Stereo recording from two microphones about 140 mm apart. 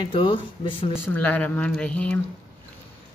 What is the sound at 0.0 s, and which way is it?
Speech, 40° left (ahead or behind).